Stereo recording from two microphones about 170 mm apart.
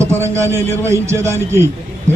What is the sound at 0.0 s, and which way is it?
A man's voice, 15° right (ahead or behind).